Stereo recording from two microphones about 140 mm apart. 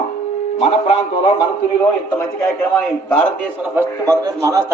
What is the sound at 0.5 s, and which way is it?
Speech, 45° left (ahead or behind).